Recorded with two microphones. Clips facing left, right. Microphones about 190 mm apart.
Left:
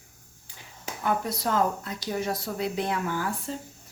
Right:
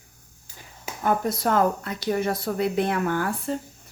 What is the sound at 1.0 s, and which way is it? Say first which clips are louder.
Speech: right 4 dB; 50° right (ahead or behind).